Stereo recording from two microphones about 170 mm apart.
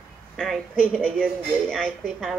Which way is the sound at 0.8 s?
10° right (ahead or behind).